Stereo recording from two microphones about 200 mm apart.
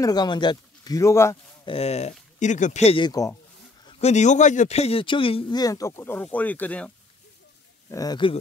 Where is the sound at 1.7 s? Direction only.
30° left (ahead or behind).